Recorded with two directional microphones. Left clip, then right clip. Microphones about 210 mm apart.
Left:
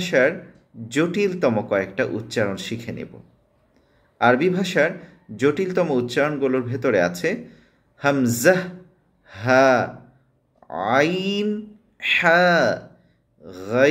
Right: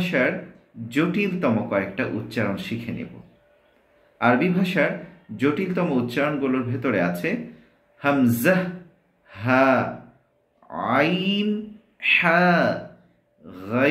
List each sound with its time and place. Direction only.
0.0 s speech: 25° left (ahead or behind)
4.2 s speech: 25° left (ahead or behind)